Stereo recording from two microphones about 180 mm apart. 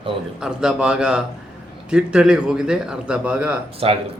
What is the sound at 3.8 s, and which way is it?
Speech, 35° right (ahead or behind).